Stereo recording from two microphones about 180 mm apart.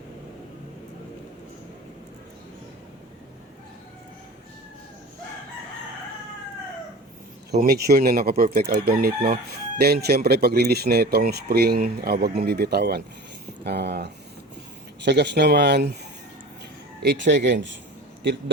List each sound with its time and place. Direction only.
7.5 s chicken: 50° right (ahead or behind)
13.7 s speech: 65° right (ahead or behind)
15.0 s speech: 75° right (ahead or behind)
17.0 s speech: 70° right (ahead or behind)